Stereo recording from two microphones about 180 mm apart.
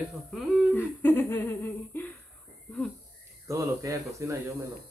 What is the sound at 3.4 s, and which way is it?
Speech, 20° right (ahead or behind).